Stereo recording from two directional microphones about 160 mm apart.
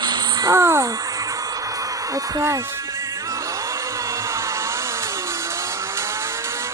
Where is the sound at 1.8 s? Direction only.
20° right (ahead or behind).